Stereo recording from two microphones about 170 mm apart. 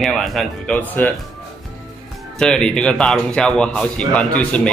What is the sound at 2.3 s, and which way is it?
Speech, 5° left (ahead or behind).